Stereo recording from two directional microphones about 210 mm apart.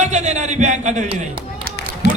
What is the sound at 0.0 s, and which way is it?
A man's voice, 35° right (ahead or behind).